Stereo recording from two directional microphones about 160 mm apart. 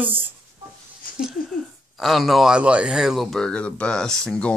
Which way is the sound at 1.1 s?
60° left (ahead or behind).